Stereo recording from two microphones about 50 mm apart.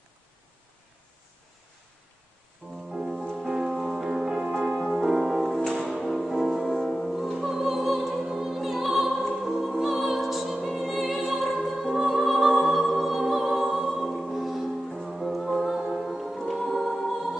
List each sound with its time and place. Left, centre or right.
2.9 s music: centre
7.3 s opera: centre
9.4 s music: centre
11.9 s music: centre
12.2 s music: centre